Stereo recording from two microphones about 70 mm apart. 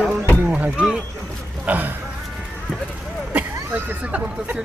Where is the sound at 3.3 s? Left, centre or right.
Right.